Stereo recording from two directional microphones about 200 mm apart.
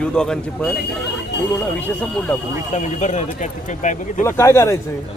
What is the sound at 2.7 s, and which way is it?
Speech, 35° left (ahead or behind).